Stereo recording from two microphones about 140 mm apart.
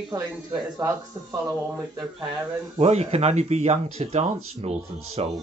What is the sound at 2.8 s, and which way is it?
Speech, 50° right (ahead or behind).